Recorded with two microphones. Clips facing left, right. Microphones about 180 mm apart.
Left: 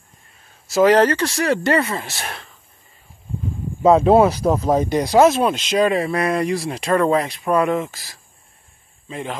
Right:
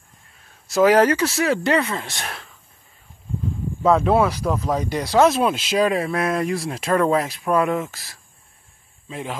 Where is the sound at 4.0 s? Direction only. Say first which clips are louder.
Left 5 dB; 30° left (ahead or behind).